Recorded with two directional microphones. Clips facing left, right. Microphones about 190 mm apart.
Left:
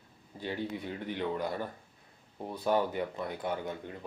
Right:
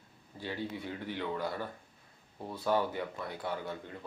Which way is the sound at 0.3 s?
20° left (ahead or behind).